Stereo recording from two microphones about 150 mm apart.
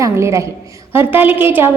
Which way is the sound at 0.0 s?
20° right (ahead or behind).